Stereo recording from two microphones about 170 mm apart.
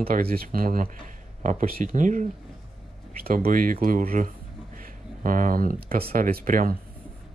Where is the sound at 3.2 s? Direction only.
55° right (ahead or behind).